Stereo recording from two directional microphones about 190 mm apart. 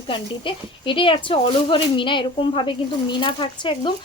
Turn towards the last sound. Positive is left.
turn(degrees=25)  # may be behind; listen again after turning